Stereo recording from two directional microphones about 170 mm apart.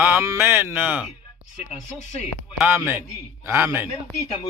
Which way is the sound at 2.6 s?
10° right (ahead or behind).